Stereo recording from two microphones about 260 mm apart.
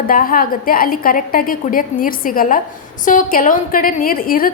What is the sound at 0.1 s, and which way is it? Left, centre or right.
A woman's voice, left.